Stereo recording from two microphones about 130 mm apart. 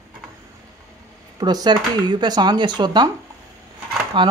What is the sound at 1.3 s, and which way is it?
Speech, 30° right (ahead or behind).